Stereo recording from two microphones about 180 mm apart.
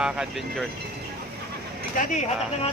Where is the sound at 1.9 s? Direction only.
40° left (ahead or behind).